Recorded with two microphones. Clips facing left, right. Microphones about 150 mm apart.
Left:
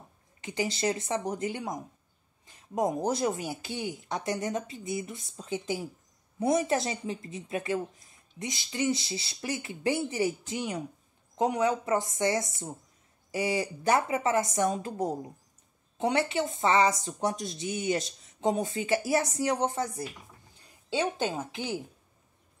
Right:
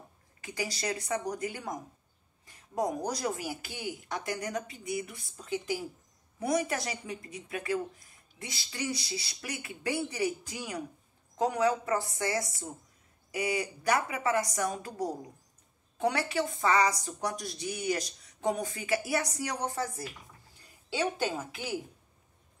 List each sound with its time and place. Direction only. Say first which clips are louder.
0.4 s speech: left 5 dB; 25° left (ahead or behind)